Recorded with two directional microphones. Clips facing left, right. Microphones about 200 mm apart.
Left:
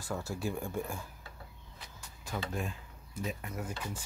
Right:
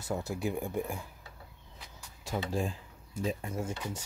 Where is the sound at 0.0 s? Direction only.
20° right (ahead or behind).